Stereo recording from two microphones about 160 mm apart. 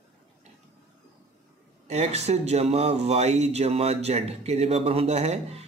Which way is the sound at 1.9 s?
45° right (ahead or behind).